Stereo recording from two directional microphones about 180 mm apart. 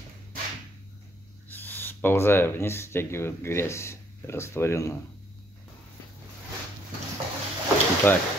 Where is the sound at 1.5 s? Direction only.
10° left (ahead or behind).